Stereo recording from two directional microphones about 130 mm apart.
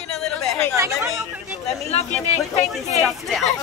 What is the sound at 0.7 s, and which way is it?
Speech, 20° right (ahead or behind).